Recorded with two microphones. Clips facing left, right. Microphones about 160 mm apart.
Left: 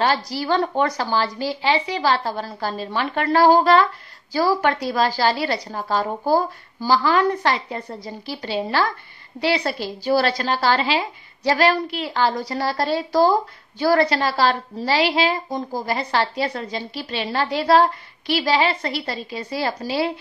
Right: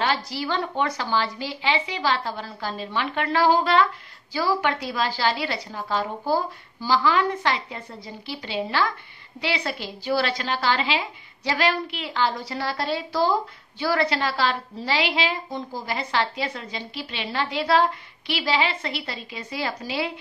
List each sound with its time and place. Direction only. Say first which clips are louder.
0.0 s a woman's voice: left 4 dB; 40° left (ahead or behind)